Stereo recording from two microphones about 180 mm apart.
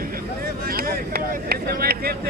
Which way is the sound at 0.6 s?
55° right (ahead or behind).